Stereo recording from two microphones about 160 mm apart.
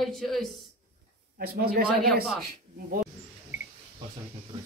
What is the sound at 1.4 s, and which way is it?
Speech, 70° right (ahead or behind).